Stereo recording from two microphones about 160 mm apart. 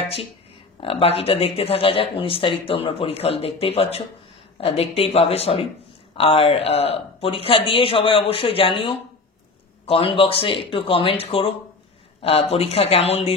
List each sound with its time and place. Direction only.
0.7 s speech: 35° left (ahead or behind)